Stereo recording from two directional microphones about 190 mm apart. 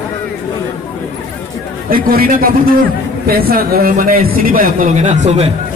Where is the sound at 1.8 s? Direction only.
50° right (ahead or behind).